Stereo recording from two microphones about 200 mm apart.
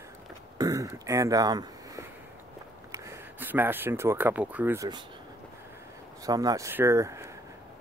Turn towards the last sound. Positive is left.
turn(degrees=-15)  # may be behind; listen again after turning